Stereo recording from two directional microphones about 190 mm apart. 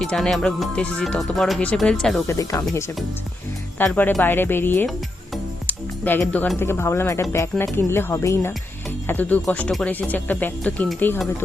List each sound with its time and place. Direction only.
0.0 s speech: centre (ahead or behind)
2.2 s speech: 15° left (ahead or behind)